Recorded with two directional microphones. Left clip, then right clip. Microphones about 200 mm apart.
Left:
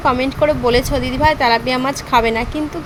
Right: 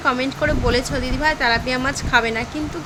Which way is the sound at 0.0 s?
10° left (ahead or behind).